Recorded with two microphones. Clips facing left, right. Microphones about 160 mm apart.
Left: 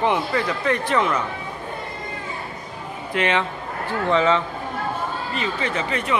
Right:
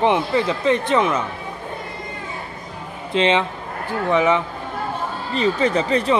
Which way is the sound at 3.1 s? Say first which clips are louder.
Right 4 dB; 20° right (ahead or behind).